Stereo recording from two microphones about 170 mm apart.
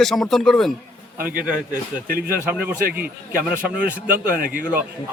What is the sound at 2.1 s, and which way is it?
A man's voice, 60° right (ahead or behind).